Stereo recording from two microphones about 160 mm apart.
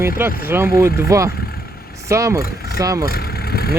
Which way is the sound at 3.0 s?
70° left (ahead or behind).